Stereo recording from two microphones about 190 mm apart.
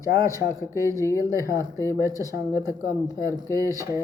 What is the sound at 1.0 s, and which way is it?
Speech, 15° left (ahead or behind).